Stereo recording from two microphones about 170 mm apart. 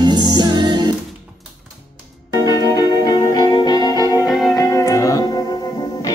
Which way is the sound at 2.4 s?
20° left (ahead or behind).